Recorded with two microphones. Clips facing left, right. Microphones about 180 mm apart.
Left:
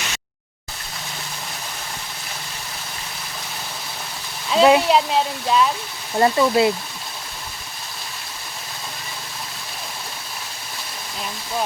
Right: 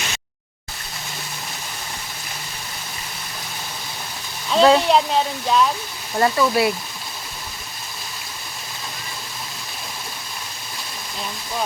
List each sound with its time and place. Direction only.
4.4 s a sound: centre (ahead or behind)
4.8 s speech: centre (ahead or behind)
6.1 s speech: 25° left (ahead or behind)